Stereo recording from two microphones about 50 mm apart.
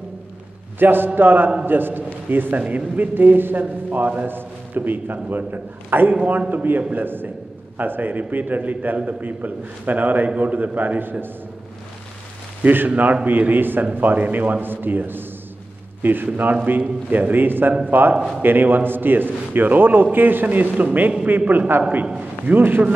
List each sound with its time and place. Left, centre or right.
0.7 s a man's voice: right
12.6 s a man's voice: right